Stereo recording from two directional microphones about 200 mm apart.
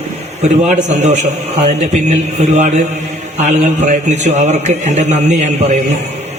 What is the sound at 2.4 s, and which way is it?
A man's voice, 35° right (ahead or behind).